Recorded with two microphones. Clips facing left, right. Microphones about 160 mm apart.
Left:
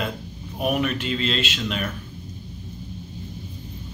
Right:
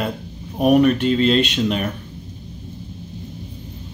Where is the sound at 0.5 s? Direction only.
40° right (ahead or behind).